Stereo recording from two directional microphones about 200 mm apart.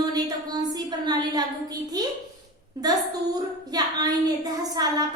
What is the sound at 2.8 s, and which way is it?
Speech, 20° right (ahead or behind).